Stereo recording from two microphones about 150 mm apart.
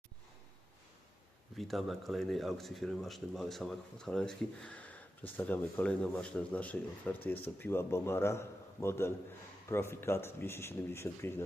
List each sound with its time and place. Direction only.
1.5 s a man's voice: centre (ahead or behind); by 11.4 s 15° left (ahead or behind)